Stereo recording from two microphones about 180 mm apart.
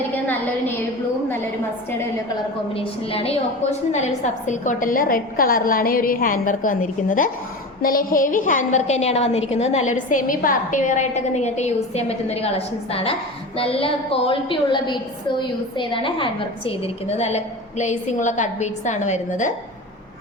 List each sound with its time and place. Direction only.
2.7 s a woman's voice: 30° left (ahead or behind)